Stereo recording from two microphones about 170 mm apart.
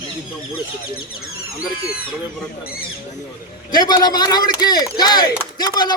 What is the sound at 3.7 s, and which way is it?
A man's voice, 25° left (ahead or behind).